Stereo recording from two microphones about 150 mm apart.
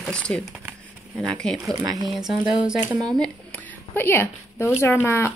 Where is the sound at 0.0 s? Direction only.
5° left (ahead or behind).